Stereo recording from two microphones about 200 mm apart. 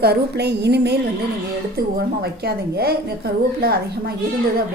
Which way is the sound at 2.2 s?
55° right (ahead or behind).